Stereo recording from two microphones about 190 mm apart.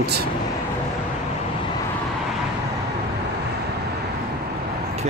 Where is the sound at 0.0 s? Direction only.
60° right (ahead or behind).